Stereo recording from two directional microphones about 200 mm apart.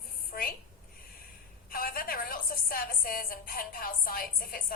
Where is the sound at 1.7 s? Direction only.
45° left (ahead or behind).